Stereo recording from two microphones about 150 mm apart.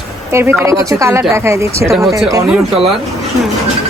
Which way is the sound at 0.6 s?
20° right (ahead or behind).